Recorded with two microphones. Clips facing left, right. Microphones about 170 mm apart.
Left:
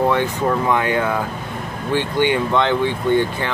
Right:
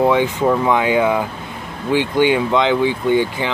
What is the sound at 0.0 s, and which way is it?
Speech, 10° right (ahead or behind).